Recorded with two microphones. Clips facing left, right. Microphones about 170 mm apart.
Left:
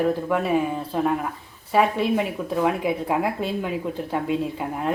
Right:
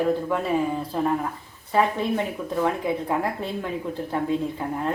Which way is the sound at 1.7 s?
10° left (ahead or behind).